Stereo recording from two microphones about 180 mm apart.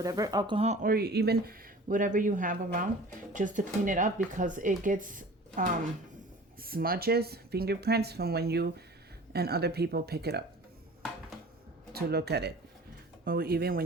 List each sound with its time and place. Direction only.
0.0 s speech: 20° right (ahead or behind); by 0.9 s 35° right (ahead or behind)
0.9 s speech: 60° right (ahead or behind)
11.9 s speech: 65° right (ahead or behind)